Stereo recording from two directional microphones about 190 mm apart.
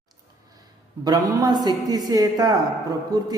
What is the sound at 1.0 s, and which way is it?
A man's voice, 20° right (ahead or behind).